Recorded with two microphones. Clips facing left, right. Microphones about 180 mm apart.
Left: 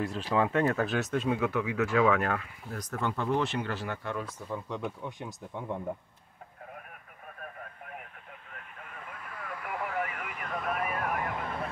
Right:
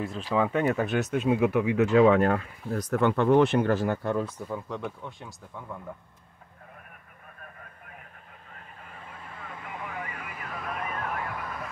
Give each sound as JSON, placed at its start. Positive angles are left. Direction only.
{"t": 0.3, "sound": "speech", "side_deg": -5}
{"t": 1.3, "sound": "speech", "side_deg": -15}
{"t": 2.9, "sound": "speech", "side_deg": -65}
{"t": 4.3, "sound": "speech", "side_deg": 0}
{"t": 5.0, "sound": "speech", "side_deg": 20}
{"t": 8.5, "sound": "vehicle", "side_deg": -35}